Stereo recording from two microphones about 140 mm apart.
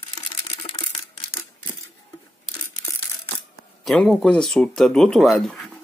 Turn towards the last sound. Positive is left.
turn(degrees=0)  # may be behind; listen again after turning